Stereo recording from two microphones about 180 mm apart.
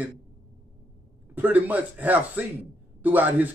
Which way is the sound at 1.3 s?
10° right (ahead or behind).